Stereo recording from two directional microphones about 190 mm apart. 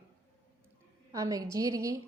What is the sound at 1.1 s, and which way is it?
Speech, 15° right (ahead or behind).